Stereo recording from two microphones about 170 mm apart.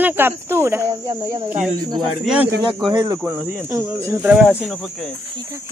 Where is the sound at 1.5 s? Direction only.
5° right (ahead or behind).